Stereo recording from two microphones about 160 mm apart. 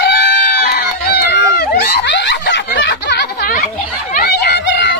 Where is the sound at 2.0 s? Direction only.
90° left.